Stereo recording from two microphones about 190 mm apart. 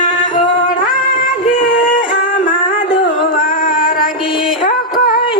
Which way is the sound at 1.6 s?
45° left (ahead or behind).